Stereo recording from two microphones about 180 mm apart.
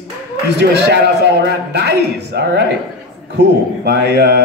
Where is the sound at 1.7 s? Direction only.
70° right (ahead or behind).